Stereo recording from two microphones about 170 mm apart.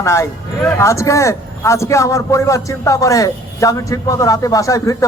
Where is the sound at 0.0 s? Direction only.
15° left (ahead or behind).